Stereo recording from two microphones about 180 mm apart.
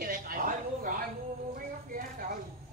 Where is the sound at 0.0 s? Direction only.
50° right (ahead or behind).